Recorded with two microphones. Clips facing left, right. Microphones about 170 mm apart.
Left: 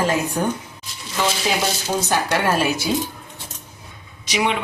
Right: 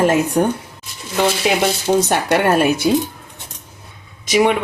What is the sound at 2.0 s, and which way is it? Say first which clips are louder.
Speech: right 4 dB; 60° right (ahead or behind).